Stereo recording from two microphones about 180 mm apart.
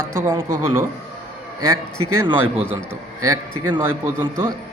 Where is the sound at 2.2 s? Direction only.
30° right (ahead or behind).